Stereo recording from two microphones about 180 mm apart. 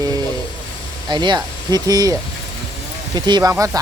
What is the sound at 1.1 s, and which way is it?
Speech, 25° right (ahead or behind).